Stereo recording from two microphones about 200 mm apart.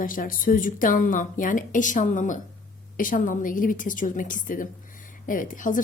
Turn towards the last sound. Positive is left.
turn(degrees=40)  # may be behind; listen again after turning